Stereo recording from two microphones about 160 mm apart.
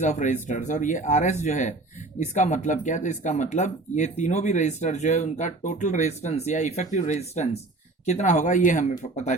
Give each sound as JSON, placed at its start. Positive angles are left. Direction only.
{"t": 0.0, "sound": "speech", "side_deg": 50}